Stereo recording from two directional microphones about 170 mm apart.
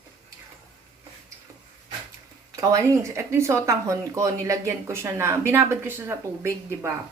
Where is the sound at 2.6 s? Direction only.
20° right (ahead or behind).